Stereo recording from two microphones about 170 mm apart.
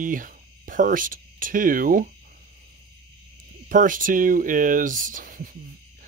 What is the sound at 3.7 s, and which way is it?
Speech, 50° right (ahead or behind).